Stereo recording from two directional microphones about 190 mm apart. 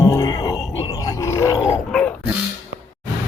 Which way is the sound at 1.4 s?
20° left (ahead or behind).